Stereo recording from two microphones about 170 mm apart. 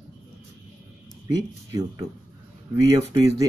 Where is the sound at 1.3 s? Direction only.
25° right (ahead or behind).